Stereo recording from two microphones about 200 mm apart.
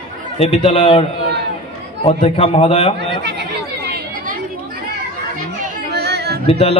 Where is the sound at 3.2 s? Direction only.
55° right (ahead or behind).